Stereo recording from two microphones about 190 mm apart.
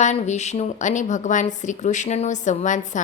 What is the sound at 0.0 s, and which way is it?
Speech, 40° left (ahead or behind).